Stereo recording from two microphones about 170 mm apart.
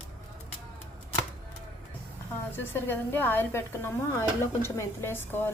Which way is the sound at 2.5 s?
10° left (ahead or behind).